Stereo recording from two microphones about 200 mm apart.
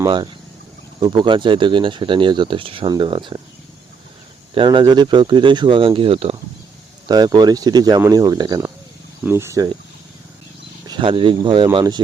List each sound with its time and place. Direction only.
0.0 s speech: 20° right (ahead or behind)
4.5 s speech: 25° right (ahead or behind)
10.8 s speech: 25° right (ahead or behind)